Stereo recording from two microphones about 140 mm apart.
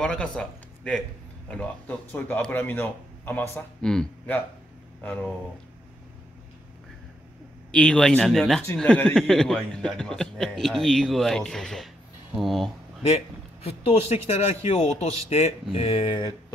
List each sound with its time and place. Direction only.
0.0 s a man's voice: 5° left (ahead or behind)
3.8 s a man's voice: 5° left (ahead or behind)
7.7 s speech: 5° left (ahead or behind)
13.7 s speech: 45° left (ahead or behind); by 16.5 s 30° left (ahead or behind)